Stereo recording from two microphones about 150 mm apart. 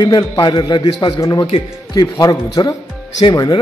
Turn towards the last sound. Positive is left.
turn(degrees=25)  # may be behind; listen again after turning